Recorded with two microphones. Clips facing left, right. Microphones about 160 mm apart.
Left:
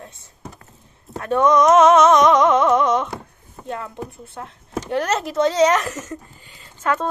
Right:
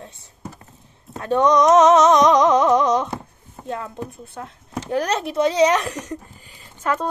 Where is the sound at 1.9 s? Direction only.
35° right (ahead or behind).